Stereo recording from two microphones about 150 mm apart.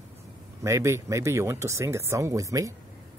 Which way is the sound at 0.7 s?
20° right (ahead or behind).